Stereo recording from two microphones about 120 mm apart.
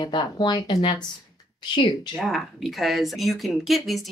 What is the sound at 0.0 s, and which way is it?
Speech, 40° left (ahead or behind).